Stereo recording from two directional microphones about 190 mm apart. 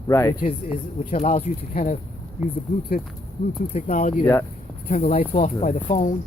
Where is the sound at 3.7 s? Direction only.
40° left (ahead or behind).